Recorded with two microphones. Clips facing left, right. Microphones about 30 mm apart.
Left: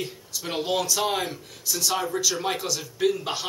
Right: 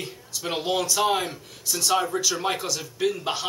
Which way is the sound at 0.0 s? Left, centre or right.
Centre.